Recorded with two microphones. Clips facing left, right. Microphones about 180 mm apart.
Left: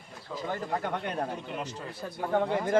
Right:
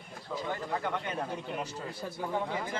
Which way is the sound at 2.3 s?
65° left (ahead or behind).